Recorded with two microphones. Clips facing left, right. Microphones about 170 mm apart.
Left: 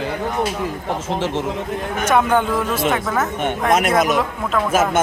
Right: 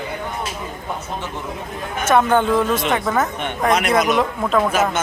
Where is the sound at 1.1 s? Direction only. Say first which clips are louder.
Left 7 dB; 90° left.